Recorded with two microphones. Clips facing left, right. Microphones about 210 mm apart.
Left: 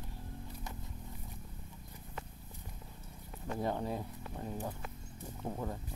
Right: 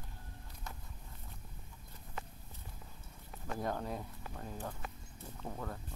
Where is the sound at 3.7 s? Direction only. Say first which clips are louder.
Left 3 dB; 10° left (ahead or behind).